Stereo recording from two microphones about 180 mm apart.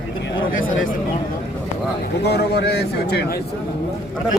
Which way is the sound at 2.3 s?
65° left (ahead or behind).